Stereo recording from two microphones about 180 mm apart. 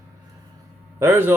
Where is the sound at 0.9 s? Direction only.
15° right (ahead or behind).